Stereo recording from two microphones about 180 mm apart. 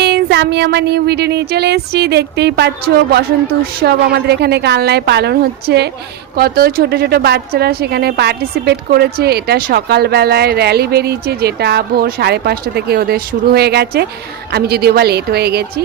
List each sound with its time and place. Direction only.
0.0 s a woman's voice: 65° right (ahead or behind)